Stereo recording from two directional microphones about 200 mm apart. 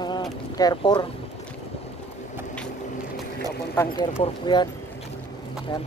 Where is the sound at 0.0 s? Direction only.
20° left (ahead or behind).